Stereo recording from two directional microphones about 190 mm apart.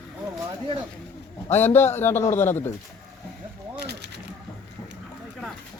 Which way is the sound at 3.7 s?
60° right (ahead or behind).